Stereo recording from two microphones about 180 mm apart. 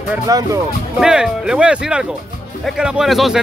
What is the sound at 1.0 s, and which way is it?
Speech, 5° right (ahead or behind).